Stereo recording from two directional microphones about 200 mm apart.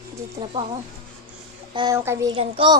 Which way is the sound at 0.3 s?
25° right (ahead or behind).